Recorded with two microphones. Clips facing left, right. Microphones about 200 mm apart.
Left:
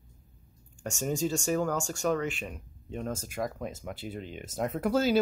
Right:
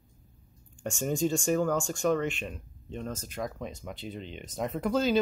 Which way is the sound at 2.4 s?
10° left (ahead or behind).